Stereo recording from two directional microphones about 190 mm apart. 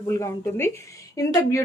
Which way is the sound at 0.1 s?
15° left (ahead or behind).